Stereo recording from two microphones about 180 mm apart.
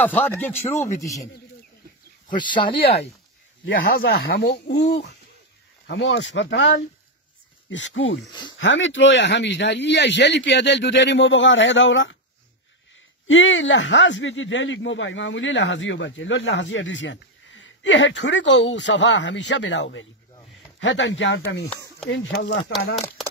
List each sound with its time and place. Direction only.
0.0 s speech: 10° left (ahead or behind)
2.3 s speech: 25° left (ahead or behind)
3.6 s speech: 60° left (ahead or behind)
5.9 s speech: 90° left
8.3 s speech: 25° left (ahead or behind)
8.5 s speech: 90° left
13.3 s speech: 90° left
22.1 s speech: 75° left (ahead or behind)